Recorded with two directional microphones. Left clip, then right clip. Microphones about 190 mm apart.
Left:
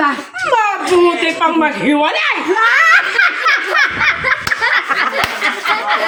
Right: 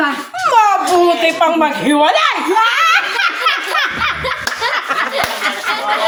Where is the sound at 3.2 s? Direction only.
10° left (ahead or behind).